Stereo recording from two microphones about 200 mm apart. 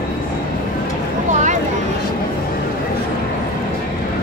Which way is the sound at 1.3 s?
35° right (ahead or behind).